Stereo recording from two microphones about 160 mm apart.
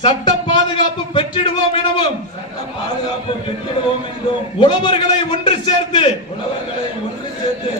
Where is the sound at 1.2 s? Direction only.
30° left (ahead or behind).